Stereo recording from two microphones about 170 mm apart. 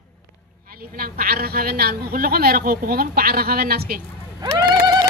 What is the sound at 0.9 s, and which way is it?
A man's voice, 60° right (ahead or behind).